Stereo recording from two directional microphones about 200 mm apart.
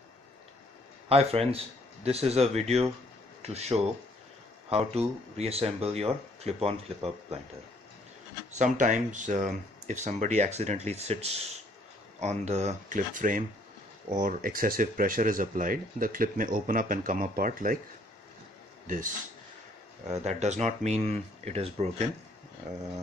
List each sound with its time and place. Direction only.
1.0 s speech: 30° right (ahead or behind)
8.5 s speech: 40° right (ahead or behind)
18.9 s speech: 40° right (ahead or behind)